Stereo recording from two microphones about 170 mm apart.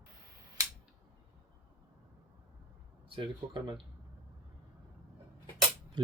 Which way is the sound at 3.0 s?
30° right (ahead or behind).